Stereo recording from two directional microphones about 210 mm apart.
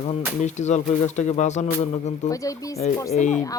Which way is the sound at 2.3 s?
15° left (ahead or behind).